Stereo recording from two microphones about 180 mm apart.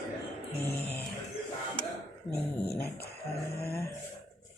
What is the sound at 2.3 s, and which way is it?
Speech, 60° left (ahead or behind).